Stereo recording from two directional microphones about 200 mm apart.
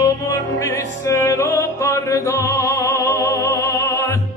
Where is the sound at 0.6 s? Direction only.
15° left (ahead or behind).